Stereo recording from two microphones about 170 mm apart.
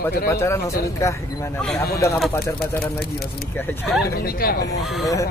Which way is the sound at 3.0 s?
65° left (ahead or behind).